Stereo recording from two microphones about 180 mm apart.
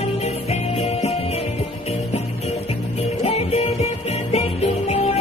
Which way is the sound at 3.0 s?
35° left (ahead or behind).